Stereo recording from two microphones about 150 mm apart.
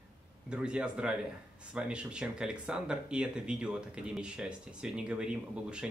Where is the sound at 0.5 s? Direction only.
5° right (ahead or behind).